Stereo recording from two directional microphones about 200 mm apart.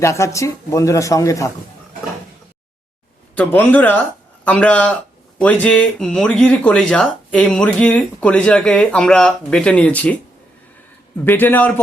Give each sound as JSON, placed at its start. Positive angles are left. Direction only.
{"t": 0.0, "sound": "speech", "side_deg": 15}
{"t": 3.3, "sound": "speech", "side_deg": 10}
{"t": 11.3, "sound": "speech", "side_deg": 10}